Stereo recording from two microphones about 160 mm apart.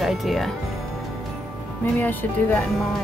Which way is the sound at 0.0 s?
Centre (ahead or behind).